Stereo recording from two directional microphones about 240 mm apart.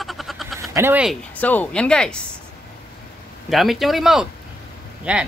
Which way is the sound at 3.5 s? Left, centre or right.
Centre.